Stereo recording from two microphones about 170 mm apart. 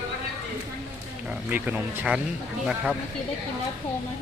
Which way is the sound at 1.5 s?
10° right (ahead or behind).